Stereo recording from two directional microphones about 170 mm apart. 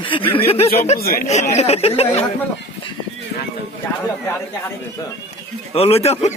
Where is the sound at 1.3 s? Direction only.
40° left (ahead or behind).